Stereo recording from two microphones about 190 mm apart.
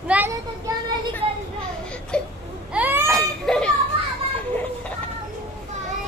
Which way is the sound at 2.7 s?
10° right (ahead or behind).